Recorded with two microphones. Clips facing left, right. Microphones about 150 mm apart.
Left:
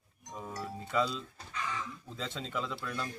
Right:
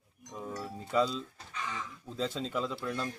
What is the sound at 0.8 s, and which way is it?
Speech, 35° right (ahead or behind).